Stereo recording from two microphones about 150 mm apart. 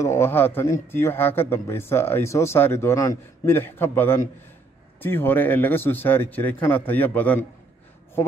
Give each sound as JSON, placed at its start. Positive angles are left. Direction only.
{"t": 0.0, "sound": "a man's voice", "side_deg": 15}